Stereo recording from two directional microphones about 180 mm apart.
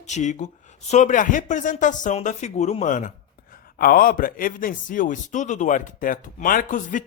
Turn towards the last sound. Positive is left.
turn(degrees=45)  # may be behind; listen again after turning